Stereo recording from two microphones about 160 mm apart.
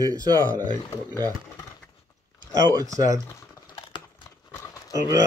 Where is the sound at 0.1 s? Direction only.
25° right (ahead or behind).